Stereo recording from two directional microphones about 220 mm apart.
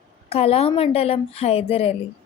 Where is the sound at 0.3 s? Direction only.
25° left (ahead or behind).